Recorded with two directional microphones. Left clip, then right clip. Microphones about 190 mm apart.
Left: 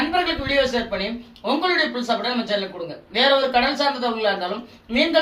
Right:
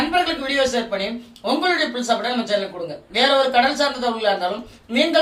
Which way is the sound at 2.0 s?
20° right (ahead or behind).